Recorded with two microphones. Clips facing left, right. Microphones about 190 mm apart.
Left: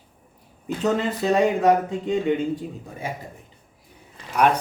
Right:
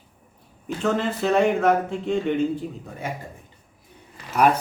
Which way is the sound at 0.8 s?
15° left (ahead or behind).